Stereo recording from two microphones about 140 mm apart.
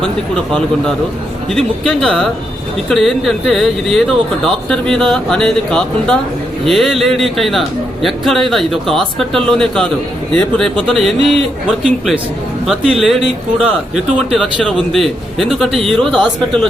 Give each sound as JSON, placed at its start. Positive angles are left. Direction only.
{"t": 0.0, "sound": "speech", "side_deg": 5}
{"t": 12.6, "sound": "speech", "side_deg": 0}
{"t": 13.1, "sound": "speech", "side_deg": -45}
{"t": 13.9, "sound": "speech", "side_deg": 0}